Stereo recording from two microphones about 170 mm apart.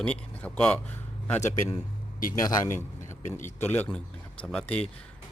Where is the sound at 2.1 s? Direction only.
50° left (ahead or behind).